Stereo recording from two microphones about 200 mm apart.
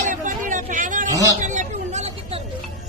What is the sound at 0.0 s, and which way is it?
Hubbub, 40° right (ahead or behind).